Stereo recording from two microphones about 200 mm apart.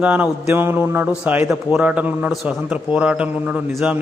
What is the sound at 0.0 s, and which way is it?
A man's voice, 10° right (ahead or behind).